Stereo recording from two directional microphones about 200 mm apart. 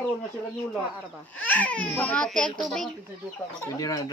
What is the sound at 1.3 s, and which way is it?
Speech, 5° left (ahead or behind).